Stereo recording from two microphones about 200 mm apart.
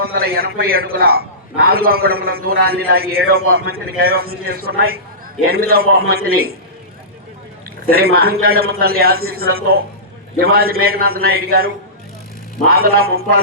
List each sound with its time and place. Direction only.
0.0 s a man's voice: 50° right (ahead or behind)
7.9 s a man's voice: 50° right (ahead or behind)